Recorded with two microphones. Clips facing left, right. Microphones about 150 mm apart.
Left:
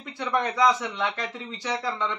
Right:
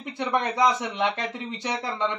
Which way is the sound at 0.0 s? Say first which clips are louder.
Right 1 dB; 20° right (ahead or behind).